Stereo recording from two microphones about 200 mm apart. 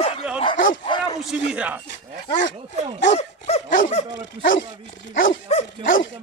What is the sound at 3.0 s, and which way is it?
Dog, 30° left (ahead or behind).